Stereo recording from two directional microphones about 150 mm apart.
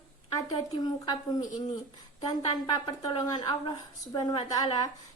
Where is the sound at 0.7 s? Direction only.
25° left (ahead or behind).